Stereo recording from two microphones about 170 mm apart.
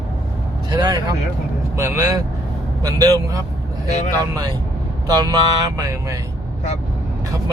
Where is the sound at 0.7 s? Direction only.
25° right (ahead or behind).